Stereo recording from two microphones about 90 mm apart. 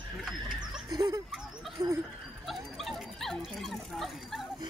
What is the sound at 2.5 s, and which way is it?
Dog, centre (ahead or behind).